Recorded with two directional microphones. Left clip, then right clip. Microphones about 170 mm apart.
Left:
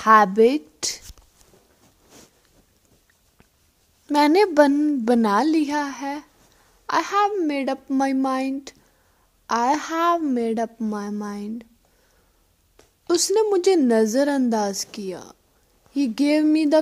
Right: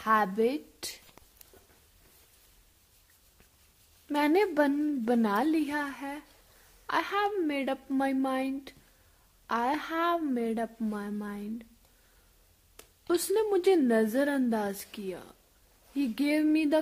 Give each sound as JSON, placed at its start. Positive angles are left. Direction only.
{"t": 0.0, "sound": "speech", "side_deg": 35}
{"t": 4.1, "sound": "a woman's voice", "side_deg": 20}
{"t": 13.0, "sound": "a woman's voice", "side_deg": 15}